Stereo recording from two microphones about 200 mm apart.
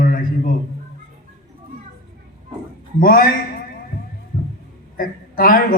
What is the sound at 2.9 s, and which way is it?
Speech, 45° left (ahead or behind).